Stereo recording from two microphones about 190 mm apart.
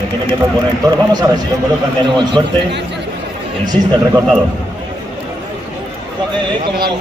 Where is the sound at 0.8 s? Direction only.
20° right (ahead or behind).